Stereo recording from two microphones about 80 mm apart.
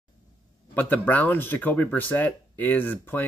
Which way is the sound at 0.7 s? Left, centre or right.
Left.